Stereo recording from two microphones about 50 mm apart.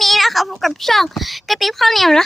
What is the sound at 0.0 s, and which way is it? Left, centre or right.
Speech, centre.